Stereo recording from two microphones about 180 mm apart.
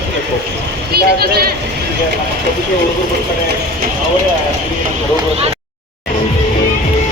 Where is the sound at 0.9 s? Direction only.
60° right (ahead or behind).